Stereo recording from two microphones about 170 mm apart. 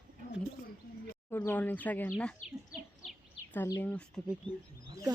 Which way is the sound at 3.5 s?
15° left (ahead or behind).